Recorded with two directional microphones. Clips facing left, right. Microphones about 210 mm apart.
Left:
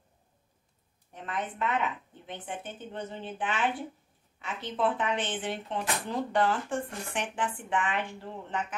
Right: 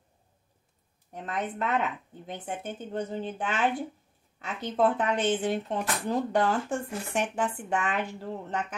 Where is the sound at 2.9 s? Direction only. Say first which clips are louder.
Right 6 dB; 40° right (ahead or behind).